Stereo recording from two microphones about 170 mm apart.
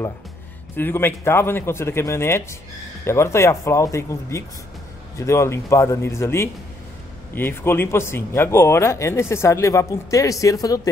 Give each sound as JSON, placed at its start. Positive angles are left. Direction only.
{"t": 0.7, "sound": "speech", "side_deg": 10}